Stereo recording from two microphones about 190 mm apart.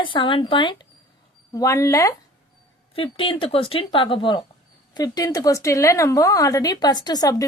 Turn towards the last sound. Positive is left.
turn(degrees=20)  # may be behind; listen again after turning